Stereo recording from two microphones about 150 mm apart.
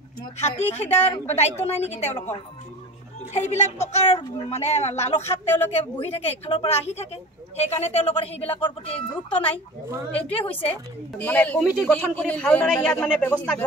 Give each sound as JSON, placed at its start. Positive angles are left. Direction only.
{"t": 0.4, "sound": "a woman's voice", "side_deg": 45}
{"t": 3.3, "sound": "a woman's voice", "side_deg": 50}
{"t": 10.7, "sound": "a man's voice", "side_deg": 10}